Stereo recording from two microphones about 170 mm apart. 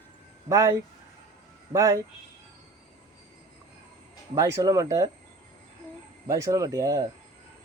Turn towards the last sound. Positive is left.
turn(degrees=-20)  # may be behind; listen again after turning